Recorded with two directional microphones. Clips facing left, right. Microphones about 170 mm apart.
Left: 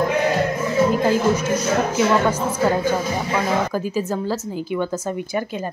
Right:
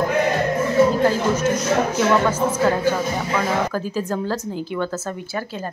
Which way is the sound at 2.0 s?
10° left (ahead or behind).